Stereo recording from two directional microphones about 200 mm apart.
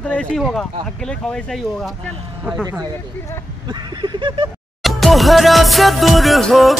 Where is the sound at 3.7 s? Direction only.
20° right (ahead or behind).